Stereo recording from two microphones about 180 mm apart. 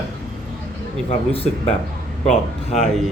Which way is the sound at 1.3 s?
35° left (ahead or behind).